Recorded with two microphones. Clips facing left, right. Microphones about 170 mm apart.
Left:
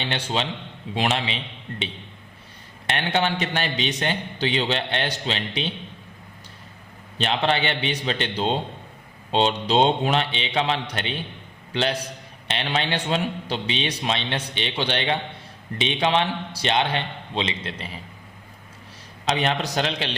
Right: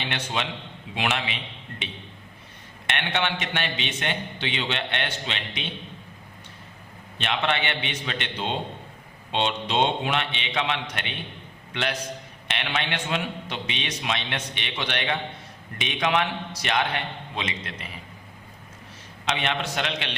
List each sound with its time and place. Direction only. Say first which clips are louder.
0.0 s a man's voice: left 3 dB; 30° left (ahead or behind)
2.8 s a man's voice: left 4 dB; 35° left (ahead or behind)
7.2 s a man's voice: left 4 dB; 35° left (ahead or behind)
19.2 s a man's voice: left 4 dB; 35° left (ahead or behind)